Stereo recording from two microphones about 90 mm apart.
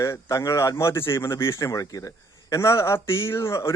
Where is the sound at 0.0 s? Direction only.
35° left (ahead or behind).